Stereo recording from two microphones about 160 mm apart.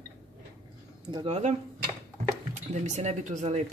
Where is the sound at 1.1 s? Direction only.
40° right (ahead or behind).